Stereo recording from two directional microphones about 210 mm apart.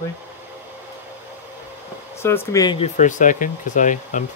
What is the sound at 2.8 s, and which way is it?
Speech, 35° left (ahead or behind).